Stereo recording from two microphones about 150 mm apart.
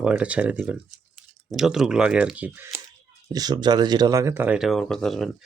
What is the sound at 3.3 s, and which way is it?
Speech, 25° right (ahead or behind).